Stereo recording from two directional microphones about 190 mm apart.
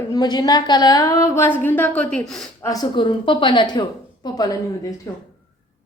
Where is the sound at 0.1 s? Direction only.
20° left (ahead or behind); by 2.5 s 5° left (ahead or behind).